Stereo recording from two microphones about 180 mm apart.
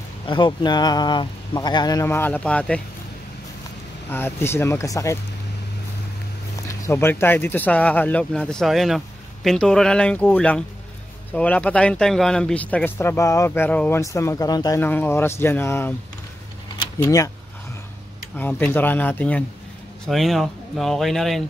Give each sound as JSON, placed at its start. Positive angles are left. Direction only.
{"t": 0.3, "sound": "speech", "side_deg": 25}
{"t": 4.1, "sound": "speech", "side_deg": 10}
{"t": 6.7, "sound": "speech", "side_deg": 15}
{"t": 17.0, "sound": "speech", "side_deg": 20}
{"t": 18.5, "sound": "speech", "side_deg": 10}